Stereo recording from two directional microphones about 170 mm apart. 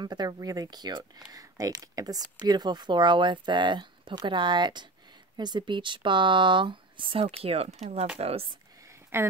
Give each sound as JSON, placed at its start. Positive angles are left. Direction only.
{"t": 0.0, "sound": "speech", "side_deg": -25}
{"t": 9.1, "sound": "speech", "side_deg": -15}